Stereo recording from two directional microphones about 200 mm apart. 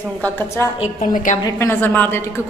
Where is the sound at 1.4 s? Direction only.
15° left (ahead or behind).